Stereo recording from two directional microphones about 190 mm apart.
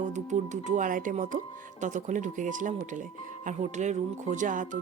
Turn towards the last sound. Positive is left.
turn(degrees=-40)  # may be behind; listen again after turning